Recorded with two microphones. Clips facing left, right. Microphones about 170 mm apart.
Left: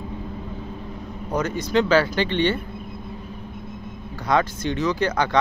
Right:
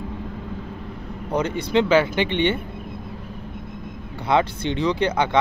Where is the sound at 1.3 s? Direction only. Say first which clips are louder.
Right 1 dB; 25° right (ahead or behind).